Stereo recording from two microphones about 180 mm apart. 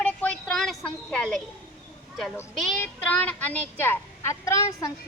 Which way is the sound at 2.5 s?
5° left (ahead or behind).